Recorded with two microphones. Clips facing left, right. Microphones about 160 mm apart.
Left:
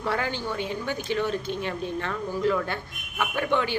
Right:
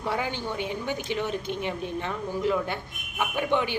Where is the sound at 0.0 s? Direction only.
15° right (ahead or behind).